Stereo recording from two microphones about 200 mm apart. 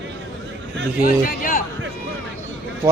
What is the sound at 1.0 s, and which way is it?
Speech, 45° left (ahead or behind).